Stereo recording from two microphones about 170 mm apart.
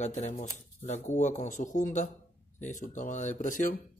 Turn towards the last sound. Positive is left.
turn(degrees=50)  # may be behind; listen again after turning